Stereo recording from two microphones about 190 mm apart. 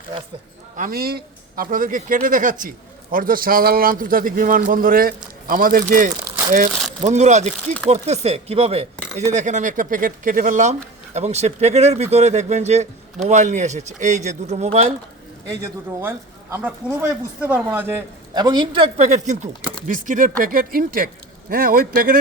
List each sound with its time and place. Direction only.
0.8 s speech: 50° right (ahead or behind); by 14.9 s 35° right (ahead or behind)
16.0 s speech: 10° right (ahead or behind)
18.3 s speech: 20° right (ahead or behind); by 22.2 s 50° right (ahead or behind)